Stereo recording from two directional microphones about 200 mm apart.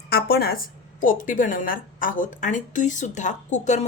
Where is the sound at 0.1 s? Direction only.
50° left (ahead or behind).